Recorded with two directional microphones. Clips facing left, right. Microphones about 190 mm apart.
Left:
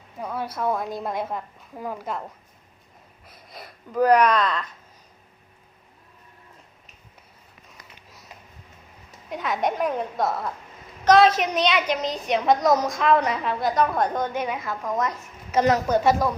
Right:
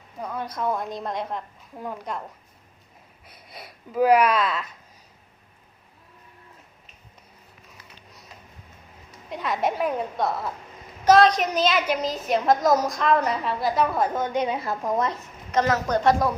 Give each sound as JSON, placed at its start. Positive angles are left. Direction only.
{"t": 0.2, "sound": "a woman's voice", "side_deg": 5}
{"t": 3.2, "sound": "speech", "side_deg": 0}
{"t": 9.3, "sound": "a woman's voice", "side_deg": 0}
{"t": 14.3, "sound": "a woman's voice", "side_deg": -25}
{"t": 15.5, "sound": "a woman's voice", "side_deg": 20}
{"t": 15.9, "sound": "a woman's voice", "side_deg": 5}